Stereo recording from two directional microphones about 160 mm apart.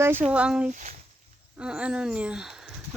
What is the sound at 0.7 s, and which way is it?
Speech, 50° right (ahead or behind).